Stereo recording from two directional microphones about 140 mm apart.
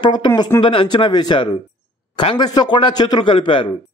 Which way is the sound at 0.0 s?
35° left (ahead or behind).